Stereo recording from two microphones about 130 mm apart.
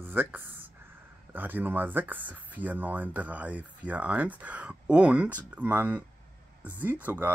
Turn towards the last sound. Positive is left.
turn(degrees=-15)  # may be behind; listen again after turning